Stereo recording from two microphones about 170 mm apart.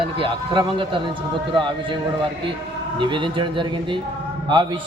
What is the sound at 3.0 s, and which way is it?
Speech, 30° right (ahead or behind).